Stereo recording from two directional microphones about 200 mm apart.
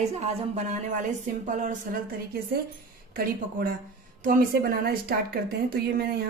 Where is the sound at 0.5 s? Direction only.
40° right (ahead or behind).